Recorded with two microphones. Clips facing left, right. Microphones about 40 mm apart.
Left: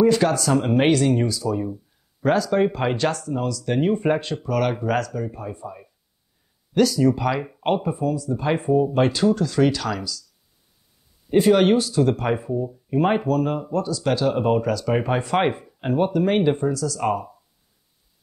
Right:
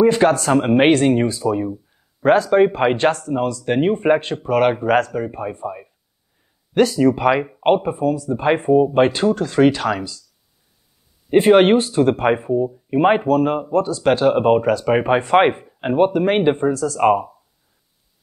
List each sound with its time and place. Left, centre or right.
0.0 s speech: right
11.2 s speech: right